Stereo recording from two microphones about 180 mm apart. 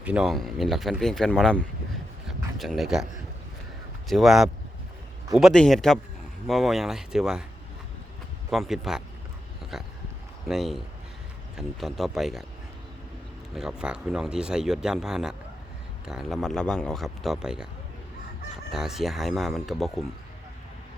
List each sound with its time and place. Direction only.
0.0 s speech: 5° right (ahead or behind)
2.2 s a sound: centre (ahead or behind)
4.1 s speech: centre (ahead or behind)
8.4 s speech: centre (ahead or behind)
13.5 s speech: 5° right (ahead or behind)
18.7 s speech: centre (ahead or behind)